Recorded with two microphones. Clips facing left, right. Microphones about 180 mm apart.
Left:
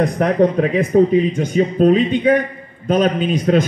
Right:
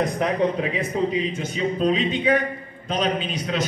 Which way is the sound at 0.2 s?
50° left (ahead or behind).